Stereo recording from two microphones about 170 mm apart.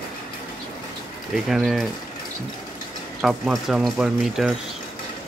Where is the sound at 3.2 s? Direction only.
Centre (ahead or behind).